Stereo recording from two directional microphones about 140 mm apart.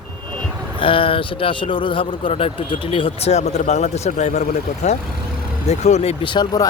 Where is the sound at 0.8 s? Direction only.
40° left (ahead or behind).